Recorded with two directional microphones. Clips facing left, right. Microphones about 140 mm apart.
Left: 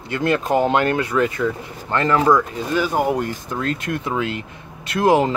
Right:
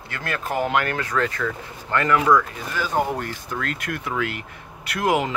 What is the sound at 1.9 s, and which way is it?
Speech, 30° left (ahead or behind).